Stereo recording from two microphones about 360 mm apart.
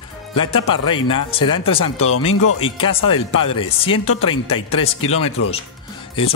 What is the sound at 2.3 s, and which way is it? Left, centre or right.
Speech, left.